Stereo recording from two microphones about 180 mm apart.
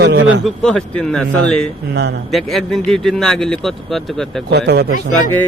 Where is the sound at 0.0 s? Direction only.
75° right (ahead or behind).